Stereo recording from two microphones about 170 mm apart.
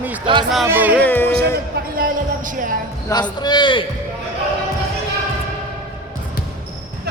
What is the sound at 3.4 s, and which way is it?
Speech, 25° left (ahead or behind).